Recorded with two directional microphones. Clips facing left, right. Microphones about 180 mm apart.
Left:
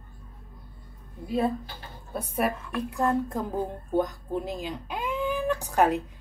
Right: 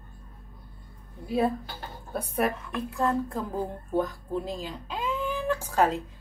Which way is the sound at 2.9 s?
20° left (ahead or behind).